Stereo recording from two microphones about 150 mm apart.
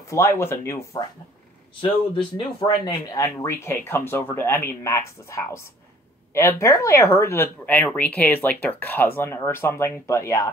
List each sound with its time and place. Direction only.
0.1 s speech: 15° left (ahead or behind)
2.3 s speech: 30° left (ahead or behind)
3.3 s speech: 15° left (ahead or behind)